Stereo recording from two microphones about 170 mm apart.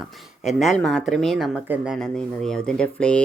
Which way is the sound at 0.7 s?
Centre (ahead or behind).